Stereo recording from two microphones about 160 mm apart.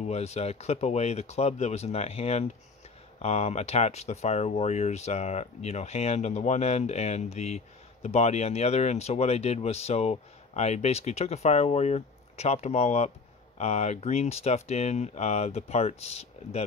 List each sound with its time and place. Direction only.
0.0 s speech: 40° left (ahead or behind)